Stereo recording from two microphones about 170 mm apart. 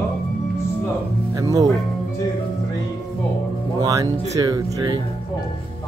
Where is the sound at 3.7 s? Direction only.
20° right (ahead or behind).